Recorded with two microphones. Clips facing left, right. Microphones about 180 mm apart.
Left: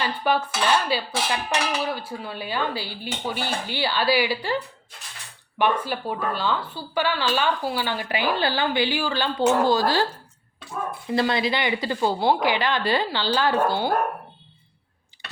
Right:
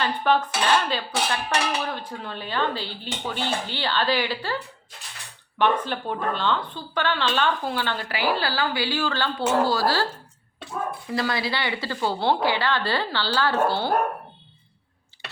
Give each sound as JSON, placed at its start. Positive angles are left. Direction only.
{"t": 0.0, "sound": "speech", "side_deg": 10}
{"t": 5.5, "sound": "speech", "side_deg": 10}
{"t": 11.1, "sound": "speech", "side_deg": 25}